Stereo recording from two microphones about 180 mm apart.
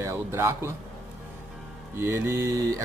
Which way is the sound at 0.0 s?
15° right (ahead or behind).